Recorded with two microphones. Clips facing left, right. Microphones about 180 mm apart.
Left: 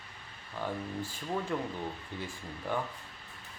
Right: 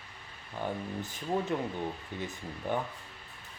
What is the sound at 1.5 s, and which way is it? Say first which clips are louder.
Speech: right 2 dB; 20° right (ahead or behind).